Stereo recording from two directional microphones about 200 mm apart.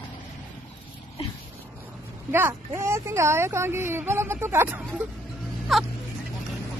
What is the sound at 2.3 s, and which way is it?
Speech, 10° right (ahead or behind).